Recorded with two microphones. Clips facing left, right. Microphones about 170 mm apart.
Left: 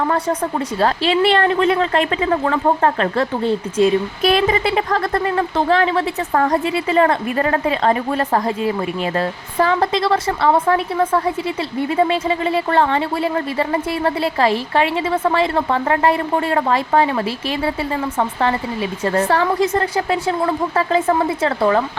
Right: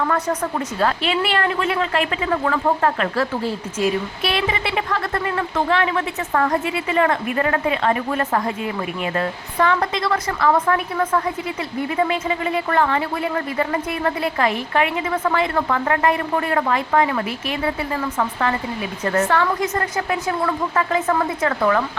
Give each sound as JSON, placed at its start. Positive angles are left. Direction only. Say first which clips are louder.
{"t": 0.8, "sound": "a woman's voice", "louder": "left 5 dB", "side_deg": 35}